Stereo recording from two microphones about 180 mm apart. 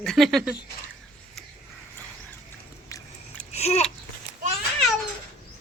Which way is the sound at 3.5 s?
35° left (ahead or behind).